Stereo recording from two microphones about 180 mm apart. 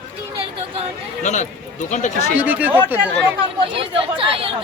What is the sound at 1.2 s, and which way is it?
Speech, 40° left (ahead or behind).